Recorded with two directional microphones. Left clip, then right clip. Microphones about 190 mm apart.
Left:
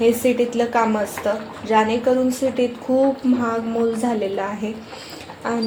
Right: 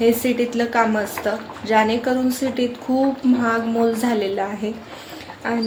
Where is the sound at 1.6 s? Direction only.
10° right (ahead or behind).